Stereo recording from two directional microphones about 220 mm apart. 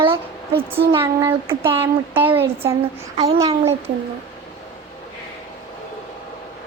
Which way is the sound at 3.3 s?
15° right (ahead or behind).